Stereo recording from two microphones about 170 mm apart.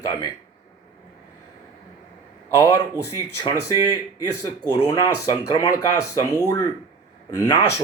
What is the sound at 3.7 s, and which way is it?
Speech, 20° right (ahead or behind).